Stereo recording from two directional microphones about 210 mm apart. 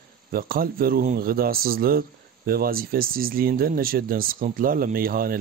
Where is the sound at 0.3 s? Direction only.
45° right (ahead or behind).